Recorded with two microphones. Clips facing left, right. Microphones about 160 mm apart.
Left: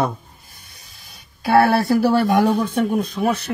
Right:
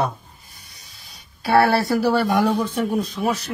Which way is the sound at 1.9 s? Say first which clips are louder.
Left 3 dB; 55° left (ahead or behind).